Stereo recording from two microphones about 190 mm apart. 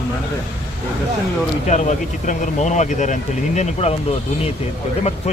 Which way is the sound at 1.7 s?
40° left (ahead or behind).